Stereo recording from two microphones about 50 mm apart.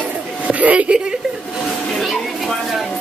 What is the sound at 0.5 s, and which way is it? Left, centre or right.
Speech, right.